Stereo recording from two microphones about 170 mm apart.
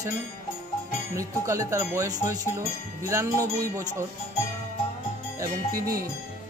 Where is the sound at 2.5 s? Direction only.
15° right (ahead or behind).